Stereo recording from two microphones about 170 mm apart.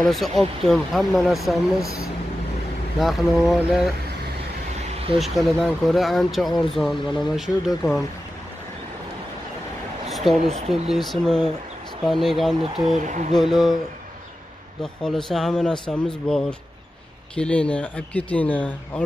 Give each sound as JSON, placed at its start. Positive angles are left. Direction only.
{"t": 0.0, "sound": "speech", "side_deg": 0}
{"t": 3.0, "sound": "speech", "side_deg": 0}
{"t": 4.8, "sound": "vehicle", "side_deg": -35}
{"t": 5.2, "sound": "speech", "side_deg": 0}
{"t": 10.0, "sound": "a sound", "side_deg": 0}
{"t": 10.7, "sound": "speech", "side_deg": 0}
{"t": 13.0, "sound": "speech", "side_deg": -45}
{"t": 13.3, "sound": "speech", "side_deg": 0}
{"t": 14.8, "sound": "speech", "side_deg": 0}